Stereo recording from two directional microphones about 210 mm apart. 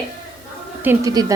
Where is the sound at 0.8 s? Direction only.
15° right (ahead or behind).